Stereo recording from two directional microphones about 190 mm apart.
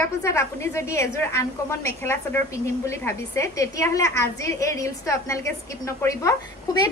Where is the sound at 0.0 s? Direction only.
15° left (ahead or behind).